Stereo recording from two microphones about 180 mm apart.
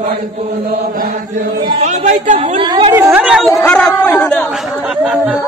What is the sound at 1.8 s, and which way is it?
Music, 40° right (ahead or behind).